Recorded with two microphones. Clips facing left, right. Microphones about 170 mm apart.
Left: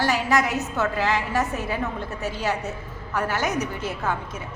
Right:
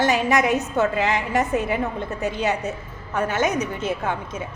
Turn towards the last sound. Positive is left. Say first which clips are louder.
# right 1 dB
turn(degrees=-20)  # may be behind; listen again after turning